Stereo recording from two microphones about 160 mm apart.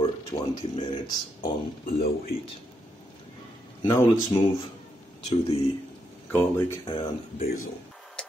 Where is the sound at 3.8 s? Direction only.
15° left (ahead or behind).